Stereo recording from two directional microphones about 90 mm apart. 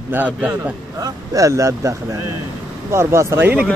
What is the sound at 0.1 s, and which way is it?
Speech, 20° right (ahead or behind).